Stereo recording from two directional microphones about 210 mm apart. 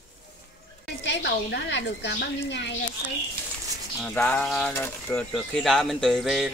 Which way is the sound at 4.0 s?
10° left (ahead or behind).